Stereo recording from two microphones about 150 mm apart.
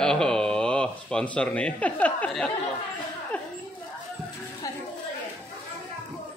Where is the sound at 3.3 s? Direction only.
10° left (ahead or behind).